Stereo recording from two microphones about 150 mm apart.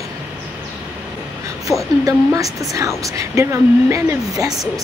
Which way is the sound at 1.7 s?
20° right (ahead or behind).